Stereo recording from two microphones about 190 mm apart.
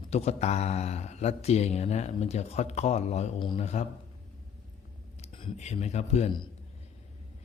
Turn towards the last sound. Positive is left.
turn(degrees=30)  # may be behind; listen again after turning